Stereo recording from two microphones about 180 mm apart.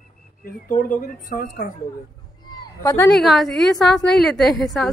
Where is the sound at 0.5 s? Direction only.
45° left (ahead or behind).